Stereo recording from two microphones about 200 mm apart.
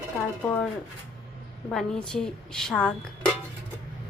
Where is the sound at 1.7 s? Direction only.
5° left (ahead or behind).